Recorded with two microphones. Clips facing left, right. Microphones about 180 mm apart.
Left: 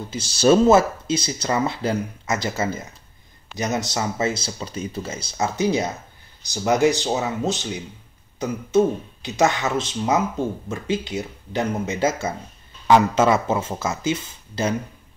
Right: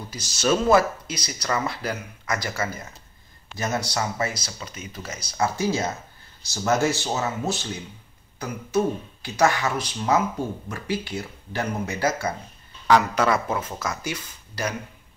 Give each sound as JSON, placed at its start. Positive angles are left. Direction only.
{"t": 0.1, "sound": "speech", "side_deg": 30}